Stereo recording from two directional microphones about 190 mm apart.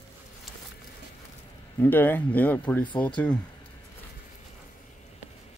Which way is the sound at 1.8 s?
10° left (ahead or behind).